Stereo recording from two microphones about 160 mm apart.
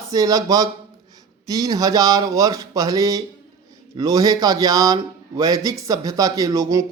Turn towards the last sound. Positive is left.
turn(degrees=-20)  # may be behind; listen again after turning